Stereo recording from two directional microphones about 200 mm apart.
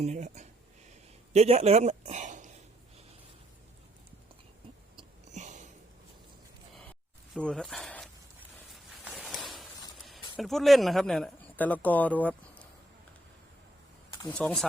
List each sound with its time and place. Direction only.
0.0 s speech: 35° right (ahead or behind)
1.3 s a sound: 30° right (ahead or behind)
5.3 s sniff: 35° right (ahead or behind)
7.3 s speech: 5° left (ahead or behind)
9.1 s a sound: 5° right (ahead or behind)
10.3 s speech: centre (ahead or behind)
14.3 s speech: 5° left (ahead or behind)